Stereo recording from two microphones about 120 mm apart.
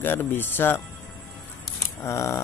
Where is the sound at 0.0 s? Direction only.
15° left (ahead or behind).